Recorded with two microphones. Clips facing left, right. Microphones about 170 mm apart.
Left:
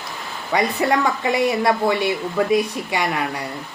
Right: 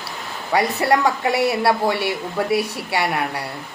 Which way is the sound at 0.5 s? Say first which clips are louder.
Right 1 dB; 5° right (ahead or behind).